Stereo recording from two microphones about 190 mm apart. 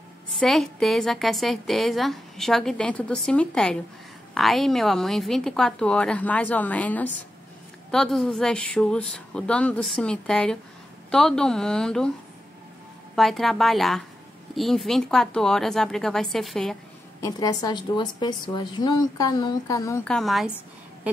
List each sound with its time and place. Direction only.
0.4 s a woman's voice: 5° left (ahead or behind)
13.1 s a woman's voice: centre (ahead or behind)
17.2 s a woman's voice: 20° left (ahead or behind)
20.1 s a woman's voice: centre (ahead or behind)